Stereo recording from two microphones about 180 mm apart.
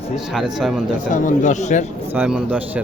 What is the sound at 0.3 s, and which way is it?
Speech, centre (ahead or behind).